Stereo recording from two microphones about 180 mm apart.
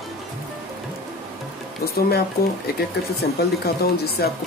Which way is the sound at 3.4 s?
60° left (ahead or behind).